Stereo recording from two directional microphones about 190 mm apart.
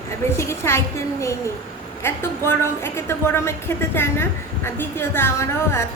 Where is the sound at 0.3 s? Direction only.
15° left (ahead or behind).